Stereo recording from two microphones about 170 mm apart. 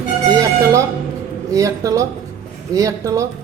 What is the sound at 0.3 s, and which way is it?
Music, 20° right (ahead or behind).